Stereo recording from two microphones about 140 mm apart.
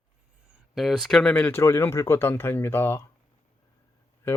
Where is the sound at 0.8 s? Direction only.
Centre (ahead or behind); by 3.0 s 15° left (ahead or behind).